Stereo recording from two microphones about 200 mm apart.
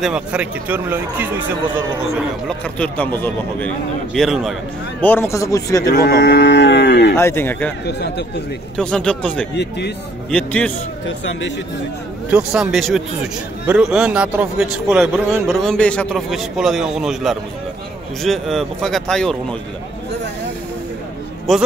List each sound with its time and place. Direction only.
0.0 s speech: 5° right (ahead or behind)
2.1 s a man's voice: 5° left (ahead or behind)
5.0 s speech: 10° left (ahead or behind)
5.9 s cattle: 55° left (ahead or behind)
7.2 s speech: 10° left (ahead or behind)
7.8 s cattle: 55° left (ahead or behind)
8.7 s a man's voice: 5° left (ahead or behind)
9.6 s cattle: 55° left (ahead or behind)
10.3 s speech: 5° left (ahead or behind)
11.1 s cattle: 65° left (ahead or behind)
12.3 s a man's voice: 5° right (ahead or behind)
21.5 s a man's voice: centre (ahead or behind)